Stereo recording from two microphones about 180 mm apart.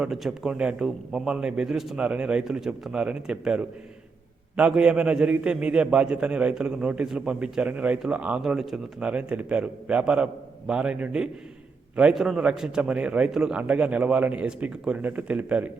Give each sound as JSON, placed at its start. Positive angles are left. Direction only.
{"t": 0.0, "sound": "a man's voice", "side_deg": 0}